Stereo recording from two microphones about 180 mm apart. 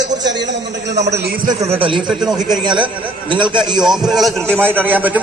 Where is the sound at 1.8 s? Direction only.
30° right (ahead or behind).